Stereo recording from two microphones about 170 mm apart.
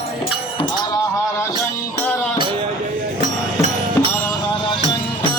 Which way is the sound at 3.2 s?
40° right (ahead or behind).